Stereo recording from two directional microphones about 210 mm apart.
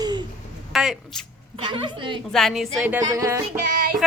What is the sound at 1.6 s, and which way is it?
Speech, 25° right (ahead or behind).